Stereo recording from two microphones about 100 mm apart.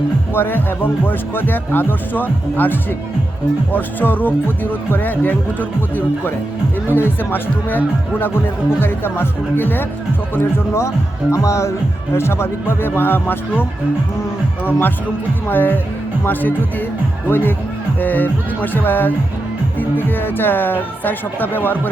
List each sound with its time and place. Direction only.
0.3 s speech: 20° left (ahead or behind)
6.9 s speech: 20° left (ahead or behind)